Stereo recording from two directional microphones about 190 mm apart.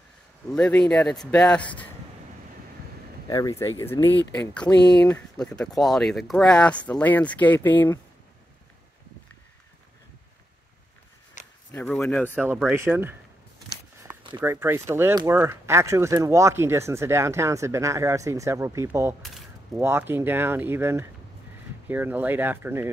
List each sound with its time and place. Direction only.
0.5 s speech: 5° left (ahead or behind)
3.3 s speech: 20° left (ahead or behind)
12.0 s speech: 10° left (ahead or behind)
12.4 s speech: 5° right (ahead or behind)
14.0 s a sound: 25° right (ahead or behind)
14.4 s speech: 10° right (ahead or behind)